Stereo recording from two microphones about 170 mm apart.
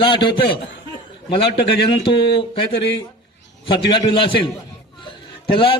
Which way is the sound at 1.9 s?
30° left (ahead or behind).